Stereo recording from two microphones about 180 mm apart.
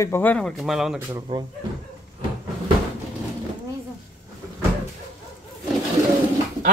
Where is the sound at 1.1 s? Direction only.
20° right (ahead or behind).